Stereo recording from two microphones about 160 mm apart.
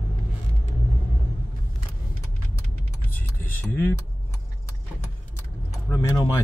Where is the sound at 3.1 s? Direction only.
10° left (ahead or behind).